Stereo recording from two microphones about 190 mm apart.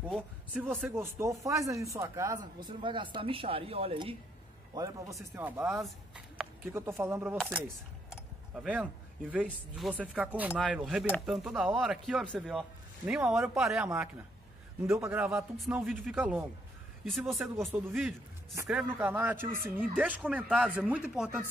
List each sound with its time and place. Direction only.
0.7 s speech: 10° right (ahead or behind); by 4.2 s 30° right (ahead or behind)
4.7 s speech: 20° right (ahead or behind)
8.5 s speech: 5° right (ahead or behind)
14.9 s speech: 15° right (ahead or behind)